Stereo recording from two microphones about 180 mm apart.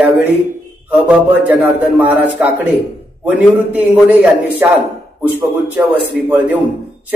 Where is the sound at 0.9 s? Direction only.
10° right (ahead or behind).